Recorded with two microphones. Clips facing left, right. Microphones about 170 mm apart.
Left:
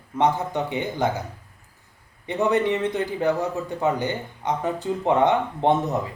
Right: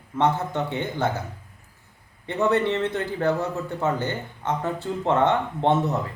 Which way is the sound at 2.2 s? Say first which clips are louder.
Left 1 dB; 15° left (ahead or behind).